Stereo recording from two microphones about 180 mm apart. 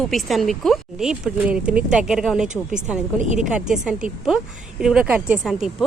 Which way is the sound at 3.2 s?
45° right (ahead or behind).